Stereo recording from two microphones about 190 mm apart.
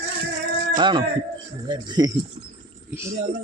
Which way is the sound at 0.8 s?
25° right (ahead or behind).